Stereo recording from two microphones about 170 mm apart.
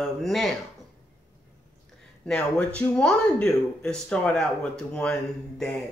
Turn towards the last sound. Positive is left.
turn(degrees=5)  # may be behind; listen again after turning